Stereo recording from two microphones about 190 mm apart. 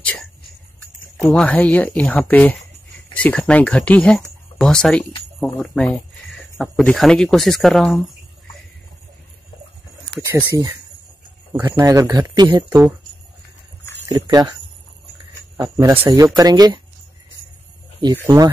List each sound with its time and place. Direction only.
0.0 s speech: 10° left (ahead or behind)
10.0 s speech: 20° right (ahead or behind)
14.0 s speech: 20° right (ahead or behind)
18.2 s speech: 15° right (ahead or behind)